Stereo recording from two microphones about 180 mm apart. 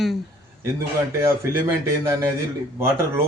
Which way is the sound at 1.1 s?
15° right (ahead or behind).